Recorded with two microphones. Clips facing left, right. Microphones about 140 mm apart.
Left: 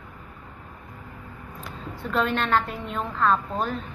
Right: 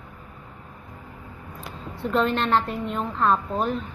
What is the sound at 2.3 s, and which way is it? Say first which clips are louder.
Speech: right 1 dB; 20° right (ahead or behind).